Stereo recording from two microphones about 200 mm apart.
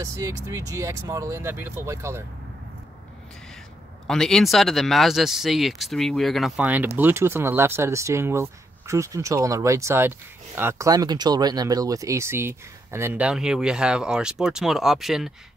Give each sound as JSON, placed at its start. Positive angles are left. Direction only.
{"t": 0.0, "sound": "speech", "side_deg": -15}
{"t": 4.1, "sound": "speech", "side_deg": 0}